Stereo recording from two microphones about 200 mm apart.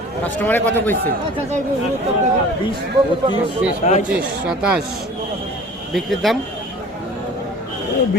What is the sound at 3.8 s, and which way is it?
Speech, 35° left (ahead or behind).